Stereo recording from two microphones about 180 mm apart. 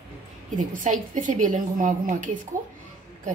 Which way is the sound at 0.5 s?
45° right (ahead or behind).